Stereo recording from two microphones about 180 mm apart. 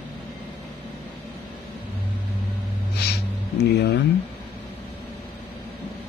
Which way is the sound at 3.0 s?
65° left (ahead or behind).